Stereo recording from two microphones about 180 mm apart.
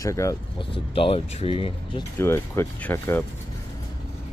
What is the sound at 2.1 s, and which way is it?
Speech, 15° left (ahead or behind).